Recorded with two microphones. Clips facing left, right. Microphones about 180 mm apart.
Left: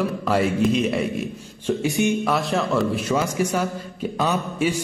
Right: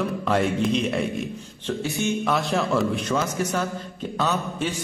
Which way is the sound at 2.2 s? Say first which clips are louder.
Left 1 dB; centre (ahead or behind).